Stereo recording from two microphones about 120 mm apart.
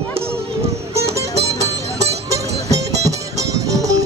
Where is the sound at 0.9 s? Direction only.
25° right (ahead or behind).